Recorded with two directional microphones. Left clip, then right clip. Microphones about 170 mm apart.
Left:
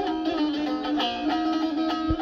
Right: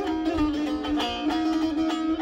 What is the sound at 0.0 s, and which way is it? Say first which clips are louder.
Music: even; 30° left (ahead or behind).